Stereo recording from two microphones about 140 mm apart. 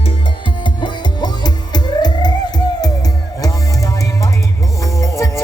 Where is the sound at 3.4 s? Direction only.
25° left (ahead or behind).